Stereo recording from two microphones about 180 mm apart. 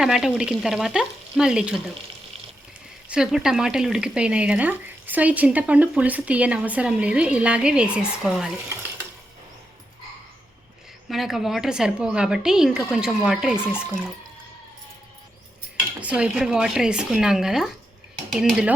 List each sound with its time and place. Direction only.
0.0 s speech: centre (ahead or behind)
3.1 s speech: 5° right (ahead or behind)
11.1 s speech: centre (ahead or behind)
16.0 s speech: 5° right (ahead or behind)